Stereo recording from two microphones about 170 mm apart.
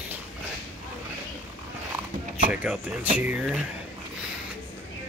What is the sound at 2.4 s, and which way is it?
Speech, 5° right (ahead or behind).